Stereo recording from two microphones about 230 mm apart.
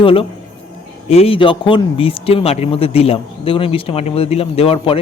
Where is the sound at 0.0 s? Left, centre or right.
Left.